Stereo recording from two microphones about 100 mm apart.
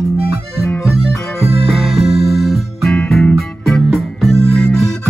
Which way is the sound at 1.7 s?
Centre (ahead or behind).